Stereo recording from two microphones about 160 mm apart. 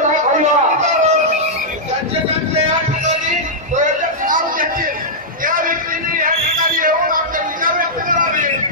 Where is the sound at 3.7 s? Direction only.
55° right (ahead or behind).